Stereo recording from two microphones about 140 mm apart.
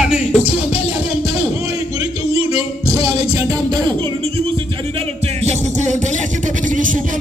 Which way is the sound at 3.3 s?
25° right (ahead or behind).